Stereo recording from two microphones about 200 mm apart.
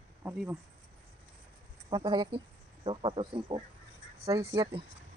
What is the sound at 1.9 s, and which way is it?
Speech, 25° right (ahead or behind).